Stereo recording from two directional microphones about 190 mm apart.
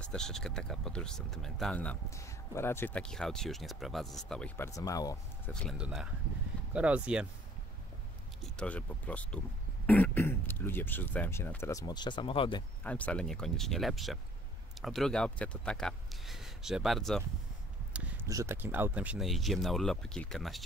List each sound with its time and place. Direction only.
0.0 s speech: 5° left (ahead or behind)
4.6 s speech: 20° left (ahead or behind)
5.5 s speech: centre (ahead or behind)
8.5 s speech: 5° left (ahead or behind); by 12.6 s 25° left (ahead or behind)
12.8 s speech: 5° left (ahead or behind)
17.9 s a sound: 5° right (ahead or behind)
18.3 s speech: 15° right (ahead or behind)